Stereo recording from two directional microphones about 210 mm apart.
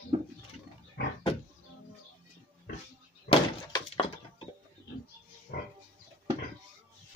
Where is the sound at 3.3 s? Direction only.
25° left (ahead or behind).